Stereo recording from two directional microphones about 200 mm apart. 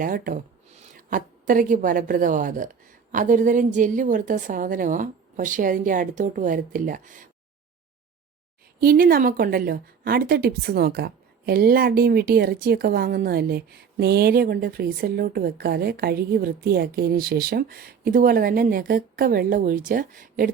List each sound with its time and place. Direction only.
0.0 s a woman's voice: 45° right (ahead or behind)
8.8 s a woman's voice: 45° right (ahead or behind)